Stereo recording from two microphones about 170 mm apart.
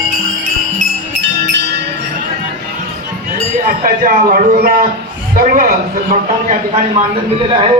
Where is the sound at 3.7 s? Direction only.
55° right (ahead or behind).